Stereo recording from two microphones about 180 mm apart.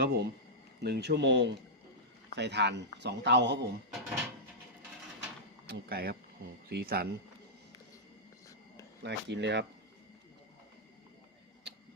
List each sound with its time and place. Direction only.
0.0 s speech: 60° right (ahead or behind)
5.6 s speech: 60° right (ahead or behind)
9.0 s speech: 70° right (ahead or behind)